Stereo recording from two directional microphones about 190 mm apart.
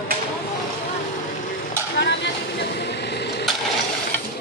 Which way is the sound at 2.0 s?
65° left (ahead or behind).